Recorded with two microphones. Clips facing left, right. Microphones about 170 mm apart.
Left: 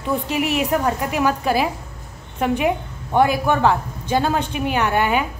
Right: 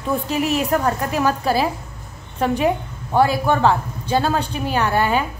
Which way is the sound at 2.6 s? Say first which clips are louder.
Right 1 dB; 20° left (ahead or behind).